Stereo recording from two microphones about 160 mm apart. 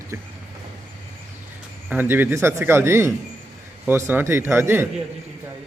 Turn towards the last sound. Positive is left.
turn(degrees=-15)  # may be behind; listen again after turning